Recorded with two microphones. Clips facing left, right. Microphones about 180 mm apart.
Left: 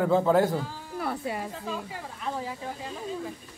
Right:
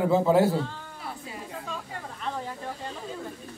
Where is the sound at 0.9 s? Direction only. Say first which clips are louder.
Left 12 dB; 65° left (ahead or behind).